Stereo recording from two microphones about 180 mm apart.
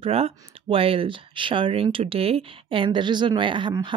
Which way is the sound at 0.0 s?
30° right (ahead or behind).